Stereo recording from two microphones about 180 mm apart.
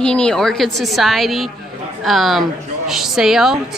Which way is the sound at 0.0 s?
5° left (ahead or behind).